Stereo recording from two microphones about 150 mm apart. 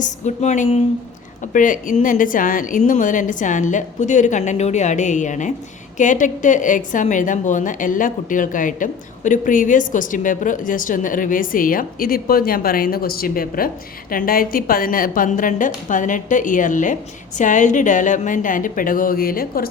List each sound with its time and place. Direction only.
0.0 s a woman's voice: 55° left (ahead or behind)
1.5 s a woman's voice: 60° left (ahead or behind)